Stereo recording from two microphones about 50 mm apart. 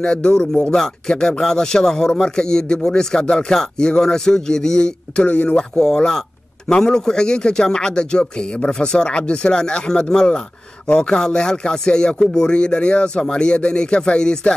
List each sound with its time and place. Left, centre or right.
0.0 s a man's voice: centre
5.8 s a man's voice: centre